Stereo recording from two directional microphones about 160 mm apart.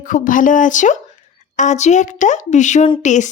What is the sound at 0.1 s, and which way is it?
Speech, 55° left (ahead or behind).